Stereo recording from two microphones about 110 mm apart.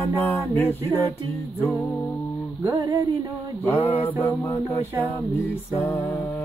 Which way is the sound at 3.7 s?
15° left (ahead or behind).